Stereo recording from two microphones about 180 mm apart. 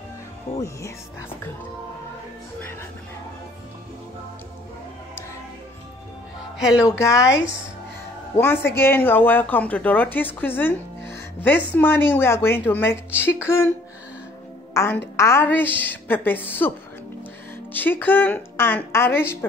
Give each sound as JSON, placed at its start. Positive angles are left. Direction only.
{"t": 6.8, "sound": "speech", "side_deg": 15}
{"t": 14.7, "sound": "speech", "side_deg": 15}
{"t": 17.7, "sound": "speech", "side_deg": 10}